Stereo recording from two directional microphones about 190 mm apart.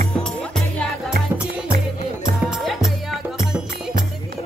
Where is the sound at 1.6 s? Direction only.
50° right (ahead or behind).